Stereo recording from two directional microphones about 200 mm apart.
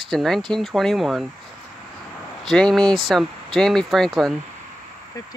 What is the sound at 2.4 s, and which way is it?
Speech, centre (ahead or behind).